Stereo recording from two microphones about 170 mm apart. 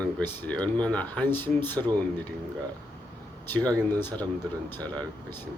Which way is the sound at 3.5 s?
10° left (ahead or behind).